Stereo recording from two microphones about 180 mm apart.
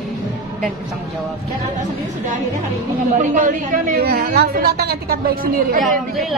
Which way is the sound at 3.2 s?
45° right (ahead or behind).